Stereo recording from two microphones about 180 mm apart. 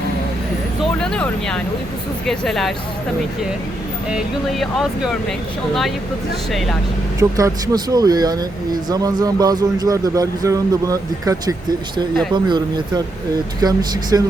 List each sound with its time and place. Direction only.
0.9 s speech: 5° left (ahead or behind)
4.1 s speech: centre (ahead or behind)
6.5 s speech: centre (ahead or behind)
7.2 s speech: 20° right (ahead or behind)